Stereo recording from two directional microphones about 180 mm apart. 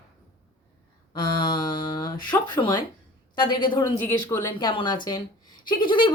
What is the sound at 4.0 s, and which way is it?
A woman's voice, 10° left (ahead or behind).